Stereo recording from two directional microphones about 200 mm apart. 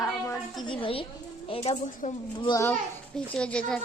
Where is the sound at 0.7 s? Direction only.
25° left (ahead or behind).